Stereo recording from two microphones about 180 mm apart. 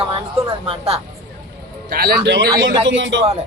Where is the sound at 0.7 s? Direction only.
35° right (ahead or behind).